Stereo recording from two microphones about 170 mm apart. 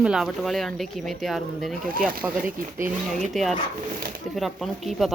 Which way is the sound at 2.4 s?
50° right (ahead or behind).